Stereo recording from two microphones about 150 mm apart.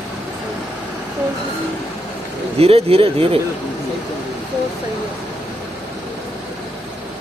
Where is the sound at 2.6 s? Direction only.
40° right (ahead or behind).